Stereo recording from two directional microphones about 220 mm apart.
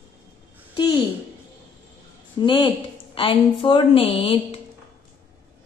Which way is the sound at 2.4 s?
20° left (ahead or behind).